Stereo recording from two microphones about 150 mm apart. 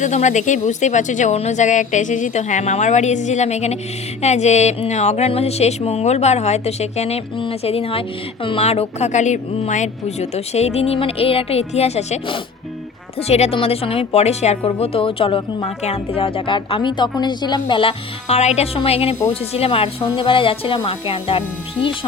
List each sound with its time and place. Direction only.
0.0 s a woman's voice: 50° left (ahead or behind)